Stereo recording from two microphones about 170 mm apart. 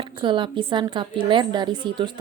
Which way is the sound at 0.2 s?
30° right (ahead or behind).